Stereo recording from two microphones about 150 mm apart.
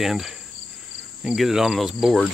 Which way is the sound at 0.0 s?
Centre (ahead or behind).